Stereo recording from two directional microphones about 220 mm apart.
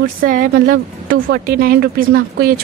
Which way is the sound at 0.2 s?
40° right (ahead or behind).